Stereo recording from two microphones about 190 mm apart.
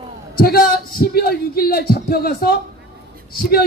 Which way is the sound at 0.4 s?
55° left (ahead or behind).